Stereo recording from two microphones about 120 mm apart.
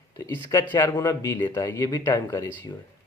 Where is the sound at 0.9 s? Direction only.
35° left (ahead or behind).